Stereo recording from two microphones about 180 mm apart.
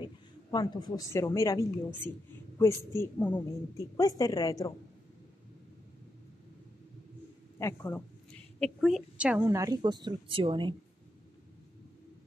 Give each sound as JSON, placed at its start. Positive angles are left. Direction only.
{"t": 0.0, "sound": "a woman's voice", "side_deg": 25}
{"t": 7.5, "sound": "speech", "side_deg": 15}
{"t": 8.5, "sound": "a woman's voice", "side_deg": 0}
{"t": 9.6, "sound": "speech", "side_deg": -20}